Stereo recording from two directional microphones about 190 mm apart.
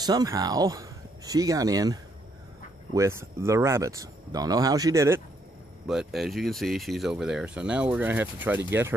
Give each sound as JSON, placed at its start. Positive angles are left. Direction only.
{"t": 0.0, "sound": "speech", "side_deg": -20}
{"t": 5.9, "sound": "speech", "side_deg": 0}